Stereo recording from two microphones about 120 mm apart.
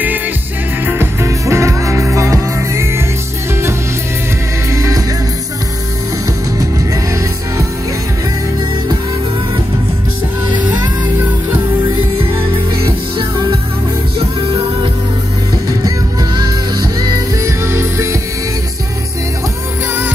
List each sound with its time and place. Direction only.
0.8 s music: 20° right (ahead or behind)
4.6 s music: 25° right (ahead or behind)
15.8 s music: 30° right (ahead or behind)
17.6 s music: 20° right (ahead or behind)